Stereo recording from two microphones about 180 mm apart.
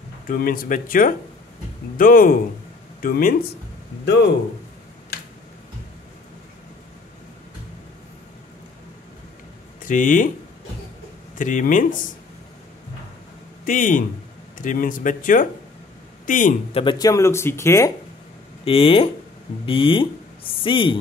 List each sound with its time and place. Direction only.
0.3 s speech: 50° left (ahead or behind)
4.0 s speech: 70° left (ahead or behind)
9.8 s speech: 45° left (ahead or behind)
11.3 s speech: 45° left (ahead or behind)
13.7 s a man's voice: 45° left (ahead or behind)
16.7 s speech: 25° left (ahead or behind)
18.6 s speech: 30° left (ahead or behind)